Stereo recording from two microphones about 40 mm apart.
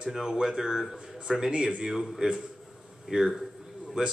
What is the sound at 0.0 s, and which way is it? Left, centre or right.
Speech, centre.